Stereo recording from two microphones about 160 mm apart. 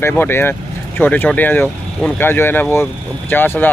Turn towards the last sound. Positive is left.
turn(degrees=15)  # may be behind; listen again after turning